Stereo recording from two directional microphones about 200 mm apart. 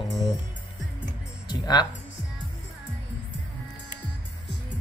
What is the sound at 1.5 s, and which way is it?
Speech, 20° left (ahead or behind).